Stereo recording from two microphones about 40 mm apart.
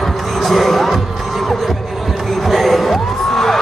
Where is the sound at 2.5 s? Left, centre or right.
Centre.